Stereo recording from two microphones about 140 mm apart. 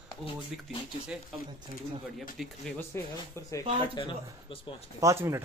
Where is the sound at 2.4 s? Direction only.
5° right (ahead or behind).